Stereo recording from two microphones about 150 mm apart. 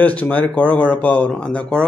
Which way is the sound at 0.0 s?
10° left (ahead or behind).